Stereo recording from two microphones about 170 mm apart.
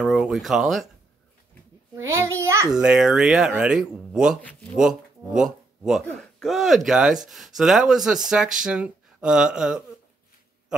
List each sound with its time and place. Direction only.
0.0 s speech: 5° right (ahead or behind)
2.0 s a child's voice: 15° right (ahead or behind)
2.7 s speech: 5° right (ahead or behind)